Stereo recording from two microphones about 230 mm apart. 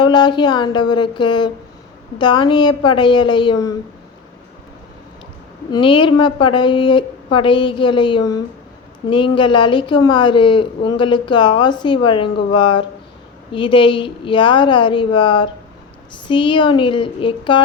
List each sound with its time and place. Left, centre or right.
0.0 s a woman's voice: centre
5.7 s a woman's voice: left